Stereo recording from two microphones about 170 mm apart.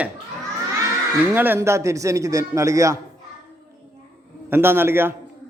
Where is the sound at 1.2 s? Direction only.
10° right (ahead or behind).